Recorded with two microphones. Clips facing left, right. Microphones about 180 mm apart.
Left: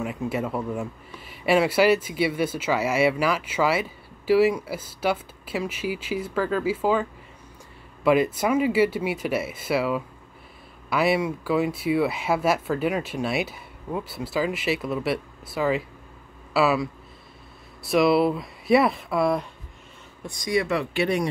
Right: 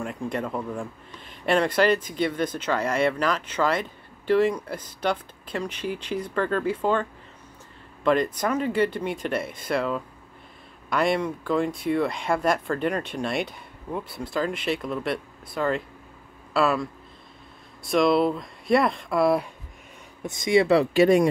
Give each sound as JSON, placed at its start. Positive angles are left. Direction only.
{"t": 0.0, "sound": "speech", "side_deg": 5}
{"t": 20.2, "sound": "speech", "side_deg": -25}